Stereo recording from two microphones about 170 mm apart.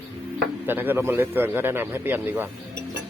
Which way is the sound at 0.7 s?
10° right (ahead or behind).